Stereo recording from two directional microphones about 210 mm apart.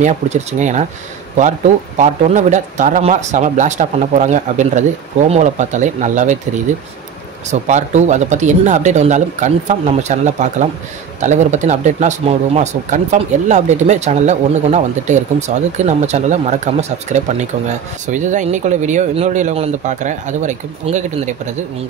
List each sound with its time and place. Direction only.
0.0 s speech: 35° right (ahead or behind)
2.0 s speech: 35° right (ahead or behind)
7.6 s speech: 35° right (ahead or behind)